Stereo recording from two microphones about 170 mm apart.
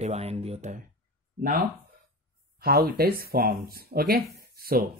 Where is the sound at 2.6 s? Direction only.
65° right (ahead or behind).